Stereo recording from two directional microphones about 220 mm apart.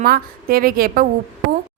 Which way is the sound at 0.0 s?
40° right (ahead or behind).